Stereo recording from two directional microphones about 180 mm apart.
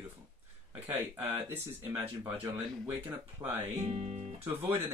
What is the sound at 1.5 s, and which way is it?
Speech, 10° right (ahead or behind).